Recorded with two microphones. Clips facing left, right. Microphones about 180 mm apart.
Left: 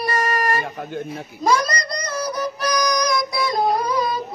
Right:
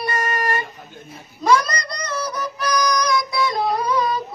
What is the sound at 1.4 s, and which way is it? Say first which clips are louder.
Child singing: right 1 dB; 35° left (ahead or behind).